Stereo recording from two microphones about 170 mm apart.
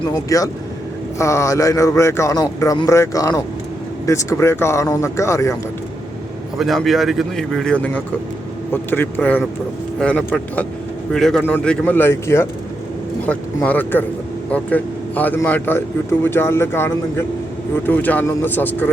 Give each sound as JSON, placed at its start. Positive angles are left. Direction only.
{"t": 0.1, "sound": "a man's voice", "side_deg": 20}
{"t": 6.6, "sound": "a man's voice", "side_deg": 0}